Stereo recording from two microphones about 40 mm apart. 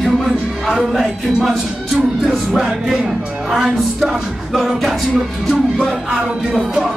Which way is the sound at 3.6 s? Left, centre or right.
Centre.